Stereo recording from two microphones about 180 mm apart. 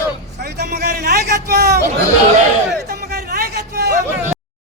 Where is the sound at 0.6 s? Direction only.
65° right (ahead or behind).